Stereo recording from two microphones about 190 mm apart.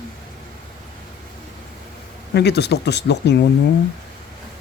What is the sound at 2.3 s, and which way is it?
Speech, 60° left (ahead or behind).